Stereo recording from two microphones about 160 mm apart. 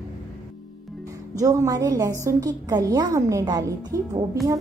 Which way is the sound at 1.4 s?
20° right (ahead or behind).